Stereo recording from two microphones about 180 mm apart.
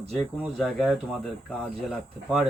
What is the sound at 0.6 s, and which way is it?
Speech, 5° left (ahead or behind).